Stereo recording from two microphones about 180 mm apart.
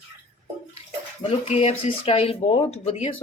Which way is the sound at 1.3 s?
35° left (ahead or behind).